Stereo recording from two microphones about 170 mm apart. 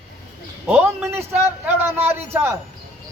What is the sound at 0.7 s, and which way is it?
A man's voice, 10° right (ahead or behind).